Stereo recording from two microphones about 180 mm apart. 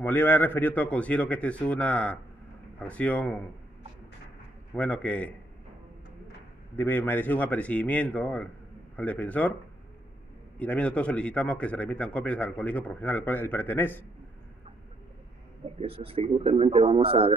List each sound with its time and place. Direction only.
0.0 s a man's voice: 10° left (ahead or behind)
4.7 s a man's voice: 5° left (ahead or behind)
6.8 s a man's voice: 10° left (ahead or behind)
10.6 s a man's voice: 5° left (ahead or behind)
15.8 s a man's voice: 30° right (ahead or behind)